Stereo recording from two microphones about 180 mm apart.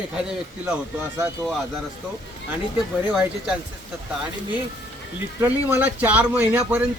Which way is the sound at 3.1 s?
5° right (ahead or behind).